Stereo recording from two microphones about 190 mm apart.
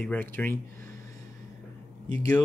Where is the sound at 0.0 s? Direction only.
10° left (ahead or behind).